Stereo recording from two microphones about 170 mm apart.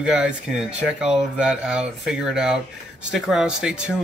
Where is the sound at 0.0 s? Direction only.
5° right (ahead or behind).